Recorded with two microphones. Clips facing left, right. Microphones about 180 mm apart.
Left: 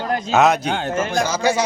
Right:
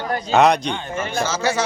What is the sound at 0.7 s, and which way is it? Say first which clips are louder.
Speech: left 5 dB; 80° left.